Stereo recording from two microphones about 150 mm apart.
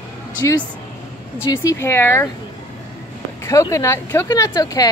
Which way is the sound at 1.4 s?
20° left (ahead or behind).